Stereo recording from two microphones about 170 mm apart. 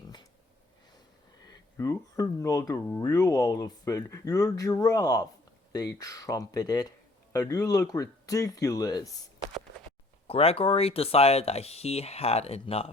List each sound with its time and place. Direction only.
1.8 s speech: 20° left (ahead or behind)
10.2 s speech: 35° left (ahead or behind)